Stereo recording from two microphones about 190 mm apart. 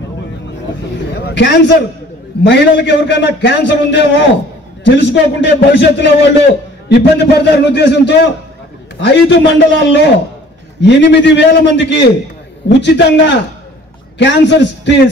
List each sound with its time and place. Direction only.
1.1 s a man's voice: 65° left (ahead or behind)